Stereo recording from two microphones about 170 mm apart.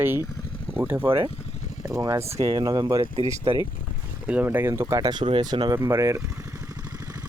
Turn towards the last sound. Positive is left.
turn(degrees=-15)  # may be behind; listen again after turning